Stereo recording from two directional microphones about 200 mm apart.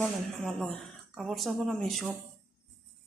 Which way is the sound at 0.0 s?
5° left (ahead or behind).